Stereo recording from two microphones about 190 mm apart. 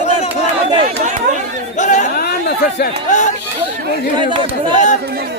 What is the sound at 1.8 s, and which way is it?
Speech, 40° left (ahead or behind).